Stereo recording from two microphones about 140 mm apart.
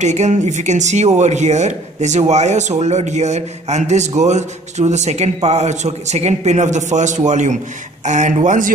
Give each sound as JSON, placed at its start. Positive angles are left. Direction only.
{"t": 0.0, "sound": "speech", "side_deg": -55}